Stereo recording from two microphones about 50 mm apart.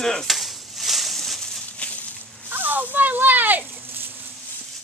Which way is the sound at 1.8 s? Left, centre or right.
Left.